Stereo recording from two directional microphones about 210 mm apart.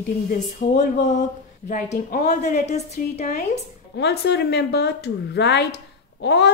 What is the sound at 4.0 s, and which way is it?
Speech, 55° left (ahead or behind).